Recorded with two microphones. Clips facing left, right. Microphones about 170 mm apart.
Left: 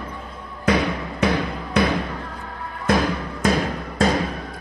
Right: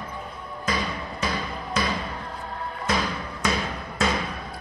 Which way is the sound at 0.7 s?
65° left (ahead or behind).